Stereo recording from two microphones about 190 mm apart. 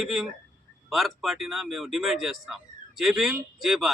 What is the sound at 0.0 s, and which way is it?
Speech, 5° right (ahead or behind).